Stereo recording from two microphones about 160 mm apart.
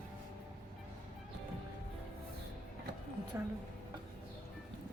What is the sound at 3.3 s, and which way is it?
Speech, 20° right (ahead or behind).